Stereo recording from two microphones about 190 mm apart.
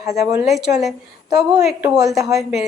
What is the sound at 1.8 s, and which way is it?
Speech, 15° right (ahead or behind).